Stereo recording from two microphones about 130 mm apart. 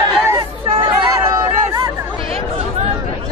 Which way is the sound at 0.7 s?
40° right (ahead or behind).